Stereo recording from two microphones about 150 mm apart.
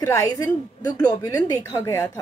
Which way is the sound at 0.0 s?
20° left (ahead or behind).